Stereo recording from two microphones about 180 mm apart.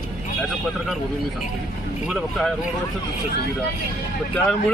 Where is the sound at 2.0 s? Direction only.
Centre (ahead or behind).